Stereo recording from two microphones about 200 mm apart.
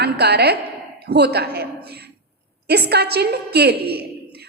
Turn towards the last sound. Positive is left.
turn(degrees=-55)  # may be behind; listen again after turning